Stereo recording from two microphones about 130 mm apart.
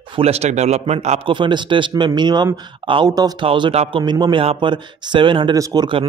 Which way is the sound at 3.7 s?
55° right (ahead or behind).